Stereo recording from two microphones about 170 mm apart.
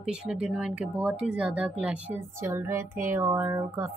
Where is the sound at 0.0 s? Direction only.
5° right (ahead or behind).